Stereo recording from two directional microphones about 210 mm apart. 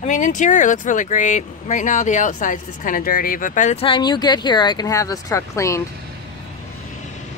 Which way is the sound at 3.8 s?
20° left (ahead or behind).